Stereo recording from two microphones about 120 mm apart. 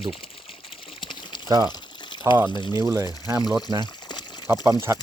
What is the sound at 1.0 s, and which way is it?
Pour, 40° left (ahead or behind).